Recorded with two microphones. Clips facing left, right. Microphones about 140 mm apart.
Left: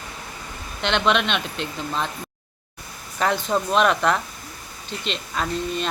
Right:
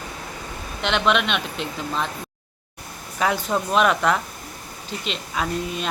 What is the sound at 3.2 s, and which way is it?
A man's voice, 5° right (ahead or behind).